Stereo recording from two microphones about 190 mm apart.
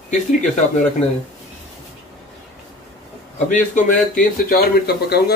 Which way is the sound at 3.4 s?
45° left (ahead or behind).